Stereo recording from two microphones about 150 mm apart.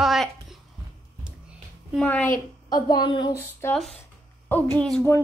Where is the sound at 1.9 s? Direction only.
10° left (ahead or behind).